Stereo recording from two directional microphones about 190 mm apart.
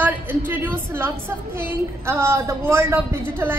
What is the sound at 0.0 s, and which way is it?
A woman's voice, 10° right (ahead or behind).